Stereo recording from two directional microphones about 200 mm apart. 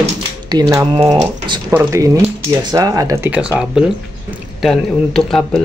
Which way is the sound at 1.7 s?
10° right (ahead or behind).